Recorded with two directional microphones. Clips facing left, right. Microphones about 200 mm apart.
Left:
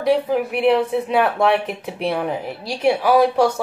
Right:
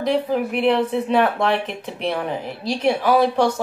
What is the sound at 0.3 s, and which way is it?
Speech, 5° left (ahead or behind).